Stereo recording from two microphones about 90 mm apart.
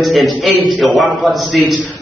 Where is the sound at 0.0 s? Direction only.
Centre (ahead or behind).